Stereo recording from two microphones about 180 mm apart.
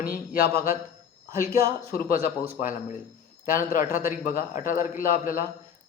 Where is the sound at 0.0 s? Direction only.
55° left (ahead or behind).